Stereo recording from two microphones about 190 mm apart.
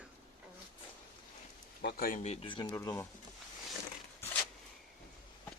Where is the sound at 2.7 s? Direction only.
15° left (ahead or behind).